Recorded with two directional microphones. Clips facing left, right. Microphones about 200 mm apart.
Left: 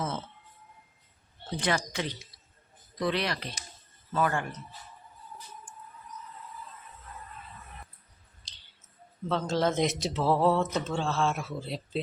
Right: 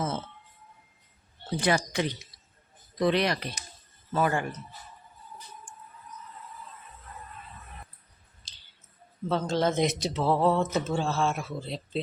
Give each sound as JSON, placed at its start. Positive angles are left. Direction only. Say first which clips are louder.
{"t": 1.5, "sound": "speech", "louder": "right 4 dB", "side_deg": -10}
{"t": 8.5, "sound": "a sound", "louder": "left 1 dB", "side_deg": -5}
{"t": 9.3, "sound": "speech", "louder": "right 1 dB", "side_deg": 0}